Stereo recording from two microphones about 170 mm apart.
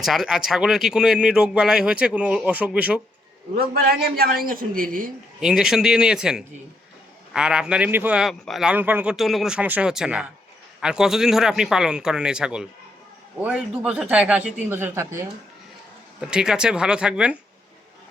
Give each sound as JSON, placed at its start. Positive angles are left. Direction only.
{"t": 0.0, "sound": "speech", "side_deg": 0}
{"t": 3.5, "sound": "a man's voice", "side_deg": -60}
{"t": 5.4, "sound": "speech", "side_deg": -5}
{"t": 16.2, "sound": "speech", "side_deg": -5}